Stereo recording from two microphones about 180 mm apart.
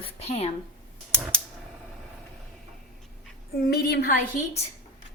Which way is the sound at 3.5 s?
60° left (ahead or behind).